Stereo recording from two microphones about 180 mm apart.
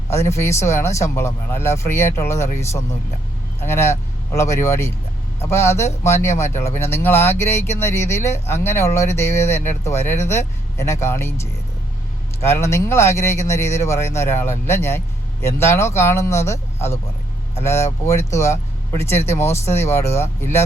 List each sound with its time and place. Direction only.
0.1 s speech: 15° left (ahead or behind)